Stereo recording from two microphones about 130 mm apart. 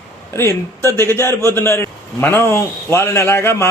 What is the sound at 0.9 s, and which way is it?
A man's voice, 20° left (ahead or behind).